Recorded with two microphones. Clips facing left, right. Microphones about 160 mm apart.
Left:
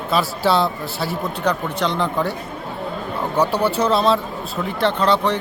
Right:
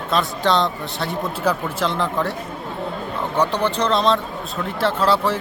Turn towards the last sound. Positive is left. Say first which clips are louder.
# left 1 dB
turn(degrees=-5)  # may be behind; listen again after turning